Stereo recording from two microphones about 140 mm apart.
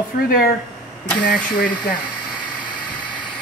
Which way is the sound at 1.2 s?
90° left.